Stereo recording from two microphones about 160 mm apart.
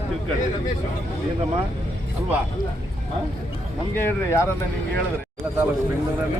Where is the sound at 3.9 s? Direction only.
15° left (ahead or behind).